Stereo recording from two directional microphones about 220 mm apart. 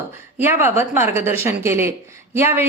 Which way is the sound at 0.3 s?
10° right (ahead or behind).